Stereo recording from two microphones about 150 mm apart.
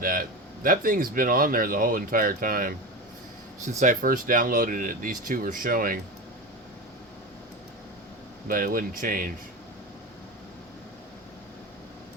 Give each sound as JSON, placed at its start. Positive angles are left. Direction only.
{"t": 0.0, "sound": "speech", "side_deg": -70}
{"t": 3.8, "sound": "speech", "side_deg": -60}
{"t": 8.4, "sound": "speech", "side_deg": -70}